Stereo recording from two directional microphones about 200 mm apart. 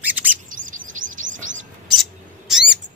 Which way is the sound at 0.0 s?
10° right (ahead or behind).